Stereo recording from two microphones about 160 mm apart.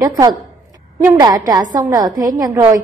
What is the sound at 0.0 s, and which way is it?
A woman's voice, 25° right (ahead or behind).